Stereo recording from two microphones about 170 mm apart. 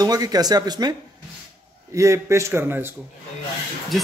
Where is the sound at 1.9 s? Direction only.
15° right (ahead or behind).